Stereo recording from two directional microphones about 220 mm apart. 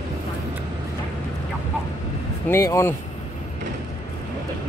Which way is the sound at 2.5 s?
15° left (ahead or behind).